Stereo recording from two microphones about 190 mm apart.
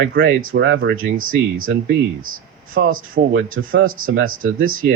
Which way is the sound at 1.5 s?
90° right.